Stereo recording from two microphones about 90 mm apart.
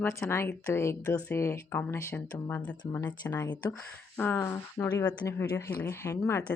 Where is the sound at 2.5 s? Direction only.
20° left (ahead or behind).